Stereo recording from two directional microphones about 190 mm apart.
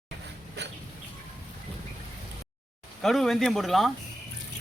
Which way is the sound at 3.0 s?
Centre (ahead or behind).